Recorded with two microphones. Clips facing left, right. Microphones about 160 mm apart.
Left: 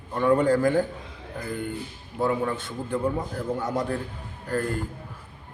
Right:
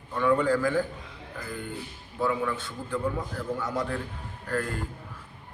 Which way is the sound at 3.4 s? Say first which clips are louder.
Left 3 dB; 40° left (ahead or behind).